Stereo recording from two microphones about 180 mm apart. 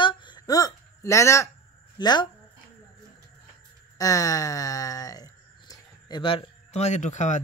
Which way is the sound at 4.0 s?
20° left (ahead or behind).